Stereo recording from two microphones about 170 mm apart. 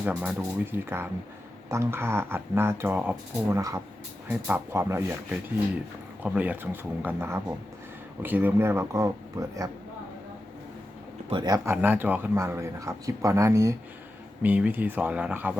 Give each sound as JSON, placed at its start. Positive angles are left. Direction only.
{"t": 0.0, "sound": "speech", "side_deg": -10}
{"t": 6.2, "sound": "speech", "side_deg": -10}
{"t": 11.3, "sound": "speech", "side_deg": -25}